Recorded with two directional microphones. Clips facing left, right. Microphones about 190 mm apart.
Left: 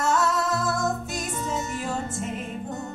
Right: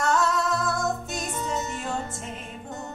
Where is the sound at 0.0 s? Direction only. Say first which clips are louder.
Even; centre (ahead or behind).